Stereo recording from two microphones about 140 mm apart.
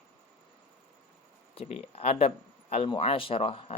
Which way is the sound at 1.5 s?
45° left (ahead or behind).